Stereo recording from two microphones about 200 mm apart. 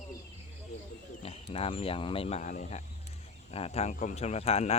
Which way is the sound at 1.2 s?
30° left (ahead or behind).